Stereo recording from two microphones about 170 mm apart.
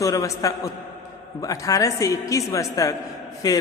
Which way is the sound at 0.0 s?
20° left (ahead or behind).